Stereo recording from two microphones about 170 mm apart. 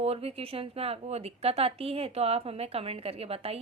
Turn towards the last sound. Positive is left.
turn(degrees=-35)  # may be behind; listen again after turning